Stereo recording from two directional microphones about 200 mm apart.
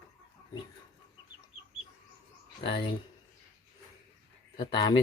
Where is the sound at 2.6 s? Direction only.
30° left (ahead or behind).